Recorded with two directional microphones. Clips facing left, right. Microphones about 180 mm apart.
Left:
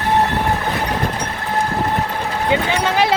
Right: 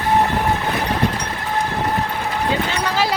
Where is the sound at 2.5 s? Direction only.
20° left (ahead or behind).